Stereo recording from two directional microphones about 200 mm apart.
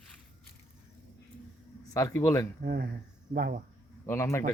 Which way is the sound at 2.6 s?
50° right (ahead or behind).